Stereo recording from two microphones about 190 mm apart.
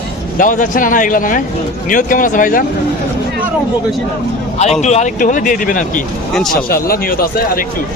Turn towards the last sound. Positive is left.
turn(degrees=50)  # may be behind; listen again after turning